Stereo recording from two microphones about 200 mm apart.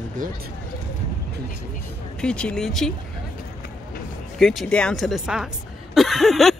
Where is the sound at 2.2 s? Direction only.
5° left (ahead or behind).